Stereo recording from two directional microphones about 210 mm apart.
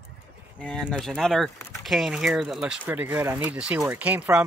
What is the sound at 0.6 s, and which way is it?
Speech, 5° left (ahead or behind).